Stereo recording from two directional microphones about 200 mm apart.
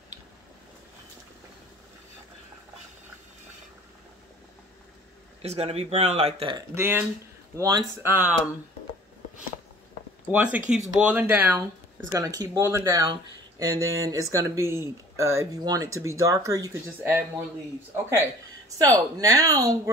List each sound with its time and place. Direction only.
5.4 s speech: 30° right (ahead or behind)
6.7 s speech: 10° right (ahead or behind)
10.2 s speech: 5° right (ahead or behind)
18.8 s speech: 15° right (ahead or behind)